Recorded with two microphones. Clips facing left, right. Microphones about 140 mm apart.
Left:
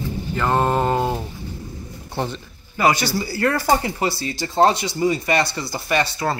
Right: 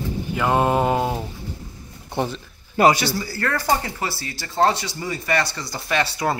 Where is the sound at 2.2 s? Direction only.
15° right (ahead or behind).